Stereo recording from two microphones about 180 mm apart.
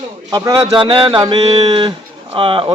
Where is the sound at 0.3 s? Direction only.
20° right (ahead or behind).